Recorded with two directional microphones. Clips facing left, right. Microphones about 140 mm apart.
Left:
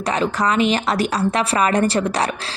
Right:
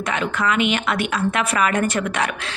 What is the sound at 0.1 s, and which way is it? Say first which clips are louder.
A woman's voice: left 3 dB; 35° left (ahead or behind).